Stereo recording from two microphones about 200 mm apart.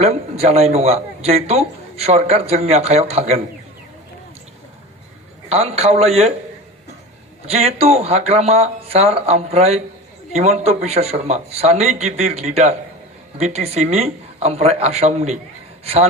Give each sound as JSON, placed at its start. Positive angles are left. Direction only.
{"t": 0.0, "sound": "a man's voice", "side_deg": -30}
{"t": 5.5, "sound": "a man's voice", "side_deg": -30}
{"t": 7.4, "sound": "a man's voice", "side_deg": -30}